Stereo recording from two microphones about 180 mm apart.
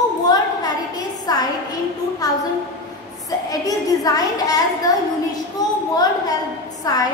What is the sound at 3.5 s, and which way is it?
A child's voice, 20° left (ahead or behind).